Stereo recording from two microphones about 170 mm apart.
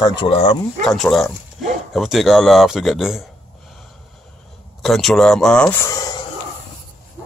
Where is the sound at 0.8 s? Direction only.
Centre (ahead or behind).